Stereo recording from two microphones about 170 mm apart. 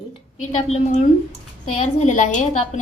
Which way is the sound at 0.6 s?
40° left (ahead or behind).